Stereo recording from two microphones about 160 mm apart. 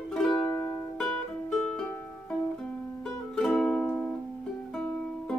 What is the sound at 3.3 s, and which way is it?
Music, 5° left (ahead or behind).